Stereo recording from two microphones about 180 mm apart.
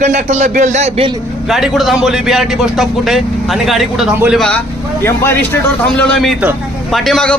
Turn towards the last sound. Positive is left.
turn(degrees=5)  # may be behind; listen again after turning